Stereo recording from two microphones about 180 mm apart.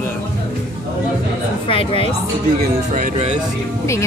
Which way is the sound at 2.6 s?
50° right (ahead or behind).